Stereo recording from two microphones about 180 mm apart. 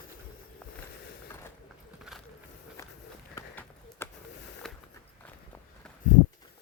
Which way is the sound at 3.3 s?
15° left (ahead or behind).